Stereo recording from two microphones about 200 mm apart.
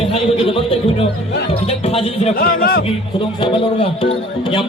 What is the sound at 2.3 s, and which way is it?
Speech, 45° left (ahead or behind).